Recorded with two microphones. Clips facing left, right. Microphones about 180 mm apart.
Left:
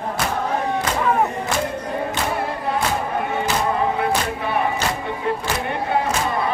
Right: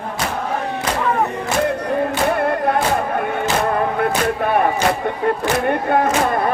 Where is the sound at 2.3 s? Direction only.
60° right (ahead or behind).